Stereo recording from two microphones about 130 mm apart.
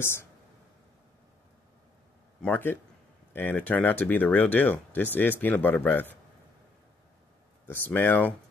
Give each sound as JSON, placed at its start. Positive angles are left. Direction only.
{"t": 0.0, "sound": "speech", "side_deg": 20}
{"t": 2.4, "sound": "speech", "side_deg": 15}
{"t": 7.6, "sound": "speech", "side_deg": 15}